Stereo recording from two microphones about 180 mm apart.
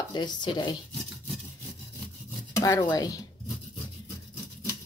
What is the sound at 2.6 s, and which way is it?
Speech, 20° left (ahead or behind).